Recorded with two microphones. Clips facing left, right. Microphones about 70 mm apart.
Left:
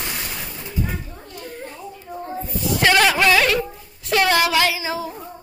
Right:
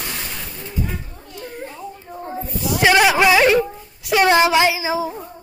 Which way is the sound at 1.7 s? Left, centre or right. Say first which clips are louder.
Right 1 dB; centre.